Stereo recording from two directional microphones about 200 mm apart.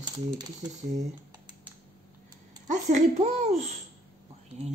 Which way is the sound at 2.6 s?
35° right (ahead or behind).